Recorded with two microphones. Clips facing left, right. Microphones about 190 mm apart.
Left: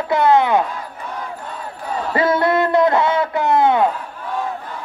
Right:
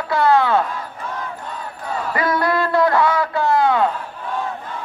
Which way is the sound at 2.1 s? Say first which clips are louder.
Left 4 dB; 25° left (ahead or behind).